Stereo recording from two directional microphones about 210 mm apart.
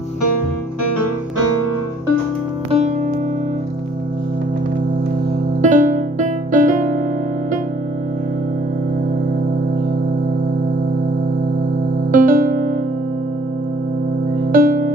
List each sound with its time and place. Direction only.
5.6 s music: 35° right (ahead or behind)
12.1 s music: 40° right (ahead or behind)
14.5 s music: 40° right (ahead or behind)